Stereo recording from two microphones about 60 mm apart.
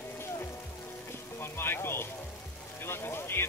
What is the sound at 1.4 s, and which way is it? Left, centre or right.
Speech, left.